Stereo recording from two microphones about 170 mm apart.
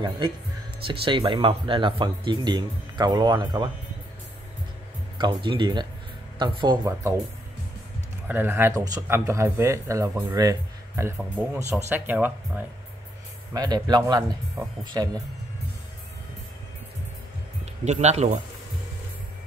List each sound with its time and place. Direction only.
0.8 s speech: 30° right (ahead or behind)
5.1 s speech: 30° right (ahead or behind)
8.3 s speech: 10° right (ahead or behind)
11.1 s speech: centre (ahead or behind)
13.5 s speech: 25° right (ahead or behind)
17.8 s speech: 40° right (ahead or behind)